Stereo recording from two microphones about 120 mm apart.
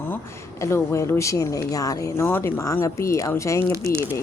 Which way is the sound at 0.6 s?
25° left (ahead or behind).